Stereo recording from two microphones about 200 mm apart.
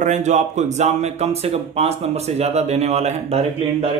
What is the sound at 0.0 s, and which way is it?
Speech, 35° right (ahead or behind).